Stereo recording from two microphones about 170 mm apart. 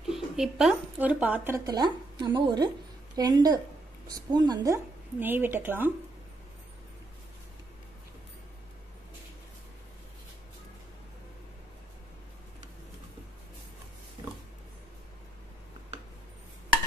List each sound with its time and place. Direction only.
0.1 s a woman's voice: 5° right (ahead or behind)
1.7 s a woman's voice: 25° right (ahead or behind)